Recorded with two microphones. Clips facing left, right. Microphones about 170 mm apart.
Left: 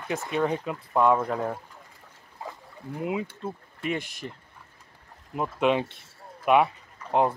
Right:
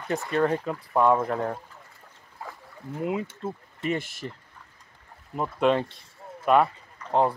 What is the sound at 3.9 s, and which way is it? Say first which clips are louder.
Speech: right 2 dB; 15° left (ahead or behind).